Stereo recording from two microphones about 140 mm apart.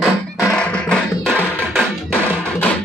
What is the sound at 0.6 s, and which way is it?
Music, 5° left (ahead or behind).